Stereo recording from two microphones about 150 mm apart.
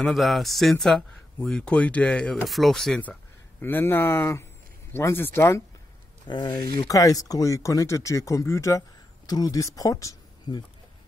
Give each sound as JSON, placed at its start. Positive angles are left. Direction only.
{"t": 0.0, "sound": "speech", "side_deg": 0}
{"t": 6.2, "sound": "speech", "side_deg": 30}